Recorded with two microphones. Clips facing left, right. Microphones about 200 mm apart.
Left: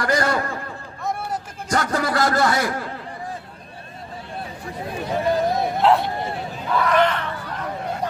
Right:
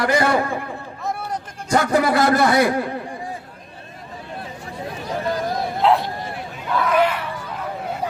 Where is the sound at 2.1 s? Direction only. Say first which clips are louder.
Right 1 dB; 60° right (ahead or behind).